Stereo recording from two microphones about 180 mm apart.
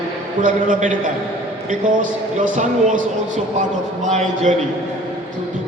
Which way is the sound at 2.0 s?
45° right (ahead or behind).